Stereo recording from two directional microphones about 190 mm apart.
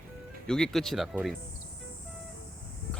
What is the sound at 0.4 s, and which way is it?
Speech, 5° left (ahead or behind).